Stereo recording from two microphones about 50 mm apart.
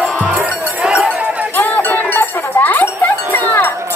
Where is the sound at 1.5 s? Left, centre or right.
Left.